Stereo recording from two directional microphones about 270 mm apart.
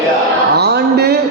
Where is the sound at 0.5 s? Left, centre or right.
Right.